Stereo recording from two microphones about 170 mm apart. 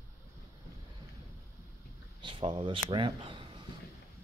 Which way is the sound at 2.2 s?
30° right (ahead or behind).